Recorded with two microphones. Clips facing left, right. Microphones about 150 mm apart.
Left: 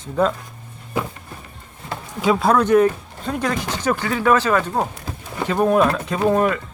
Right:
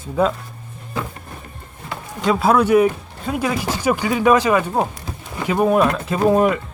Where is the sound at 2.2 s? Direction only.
Centre (ahead or behind).